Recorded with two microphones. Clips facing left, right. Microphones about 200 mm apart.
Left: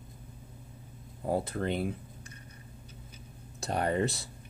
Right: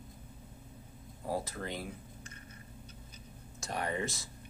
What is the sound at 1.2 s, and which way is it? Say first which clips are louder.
Speech: left 6 dB; 30° left (ahead or behind).